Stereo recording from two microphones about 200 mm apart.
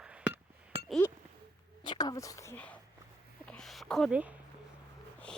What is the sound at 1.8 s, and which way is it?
Speech, 20° left (ahead or behind).